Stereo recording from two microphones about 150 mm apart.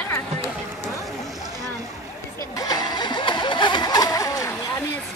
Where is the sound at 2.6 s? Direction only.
25° left (ahead or behind).